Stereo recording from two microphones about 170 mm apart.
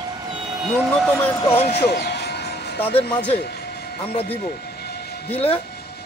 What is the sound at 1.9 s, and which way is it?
Music, 70° left (ahead or behind).